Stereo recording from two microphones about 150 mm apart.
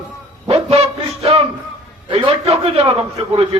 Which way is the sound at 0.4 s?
40° right (ahead or behind).